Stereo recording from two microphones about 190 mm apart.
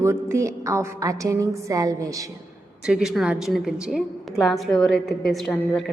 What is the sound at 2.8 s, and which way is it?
A woman's voice, 5° right (ahead or behind).